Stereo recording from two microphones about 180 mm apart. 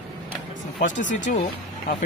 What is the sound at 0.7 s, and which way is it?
Speech, 45° left (ahead or behind).